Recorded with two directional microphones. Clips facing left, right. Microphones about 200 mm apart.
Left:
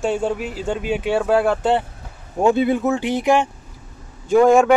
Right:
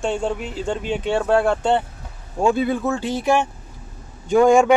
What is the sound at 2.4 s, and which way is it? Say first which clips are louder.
Speech: left 3 dB; 20° left (ahead or behind).